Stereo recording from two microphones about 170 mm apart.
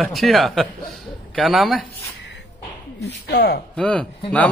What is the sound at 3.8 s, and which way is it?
Speech, 5° left (ahead or behind).